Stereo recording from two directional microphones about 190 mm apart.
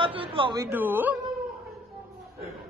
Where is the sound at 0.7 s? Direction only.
10° right (ahead or behind).